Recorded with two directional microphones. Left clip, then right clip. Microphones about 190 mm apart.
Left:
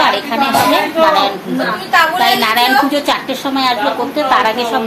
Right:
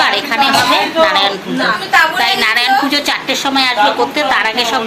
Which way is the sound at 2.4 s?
10° left (ahead or behind).